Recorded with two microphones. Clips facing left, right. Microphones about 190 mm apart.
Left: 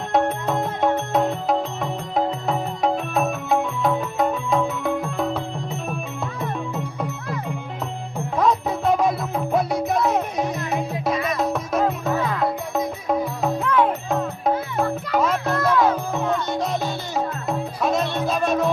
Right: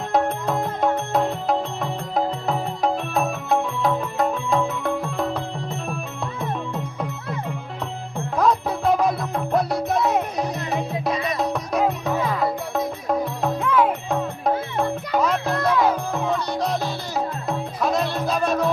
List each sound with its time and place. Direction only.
0.1 s music: centre (ahead or behind)